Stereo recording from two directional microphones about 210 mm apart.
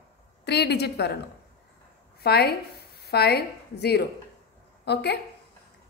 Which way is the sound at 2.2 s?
50° left (ahead or behind).